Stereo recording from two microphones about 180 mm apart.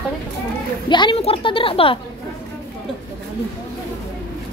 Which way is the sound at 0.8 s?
25° left (ahead or behind).